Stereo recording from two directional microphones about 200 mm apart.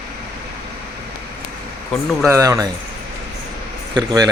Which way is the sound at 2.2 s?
15° right (ahead or behind).